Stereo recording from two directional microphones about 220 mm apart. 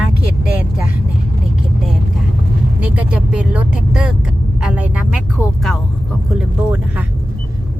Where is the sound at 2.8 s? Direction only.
5° right (ahead or behind).